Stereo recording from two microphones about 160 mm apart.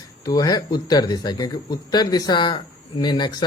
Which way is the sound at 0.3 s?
25° left (ahead or behind).